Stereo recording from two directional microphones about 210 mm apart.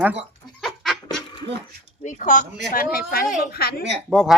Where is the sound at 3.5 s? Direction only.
50° left (ahead or behind).